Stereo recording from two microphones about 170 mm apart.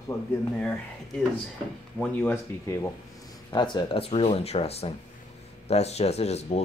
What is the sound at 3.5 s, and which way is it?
Speech, 25° left (ahead or behind).